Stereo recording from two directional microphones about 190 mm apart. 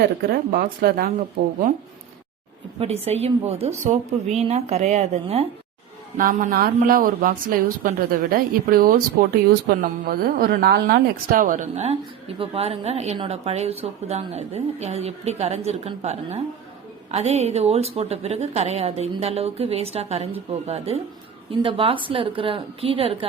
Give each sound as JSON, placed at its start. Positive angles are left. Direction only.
{"t": 0.2, "sound": "speech", "side_deg": -50}
{"t": 2.7, "sound": "a woman's voice", "side_deg": -30}
{"t": 6.1, "sound": "a woman's voice", "side_deg": -50}